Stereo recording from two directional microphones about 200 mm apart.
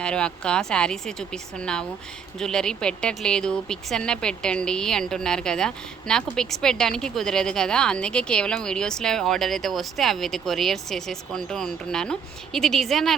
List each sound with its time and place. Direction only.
0.0 s speech: 5° left (ahead or behind)